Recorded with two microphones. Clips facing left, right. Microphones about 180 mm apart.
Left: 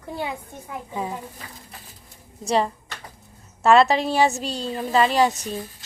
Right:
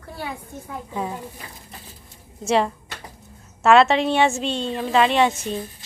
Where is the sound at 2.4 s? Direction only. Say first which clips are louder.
Right 2 dB; centre (ahead or behind).